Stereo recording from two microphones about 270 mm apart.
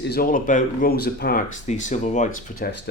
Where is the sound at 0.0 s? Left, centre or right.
Left.